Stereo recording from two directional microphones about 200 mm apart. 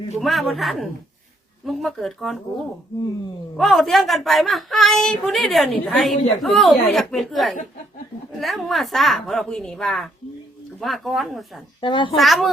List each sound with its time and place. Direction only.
0.2 s a woman's voice: centre (ahead or behind)
3.6 s a woman's voice: centre (ahead or behind)
11.8 s a child's voice: 25° left (ahead or behind)
12.1 s a woman's voice: centre (ahead or behind)